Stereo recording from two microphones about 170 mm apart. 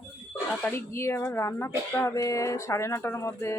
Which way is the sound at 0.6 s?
15° left (ahead or behind).